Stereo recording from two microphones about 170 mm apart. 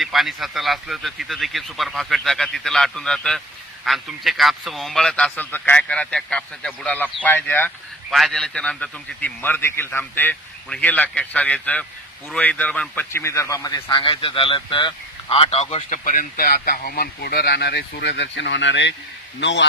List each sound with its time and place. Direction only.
0.0 s a man's voice: centre (ahead or behind); by 16.0 s 35° left (ahead or behind)
16.1 s a man's voice: 55° left (ahead or behind); by 19.6 s 90° left